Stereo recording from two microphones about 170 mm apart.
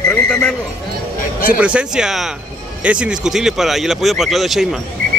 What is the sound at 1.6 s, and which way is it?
Speech, 5° right (ahead or behind).